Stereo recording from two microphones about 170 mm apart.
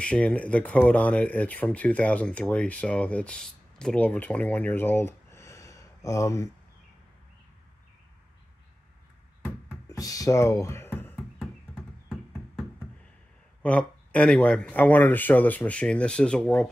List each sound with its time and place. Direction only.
0.0 s speech: 5° left (ahead or behind)
9.4 s a sound: 15° left (ahead or behind)
13.6 s speech: 5° left (ahead or behind)